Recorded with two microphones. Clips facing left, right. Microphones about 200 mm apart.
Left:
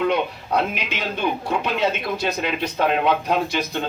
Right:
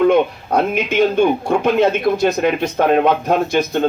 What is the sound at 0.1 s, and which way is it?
Speech, 45° right (ahead or behind).